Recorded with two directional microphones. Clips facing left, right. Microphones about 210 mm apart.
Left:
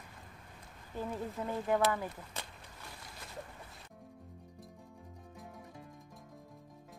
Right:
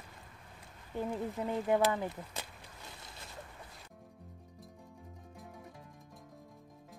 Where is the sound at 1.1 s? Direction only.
15° right (ahead or behind).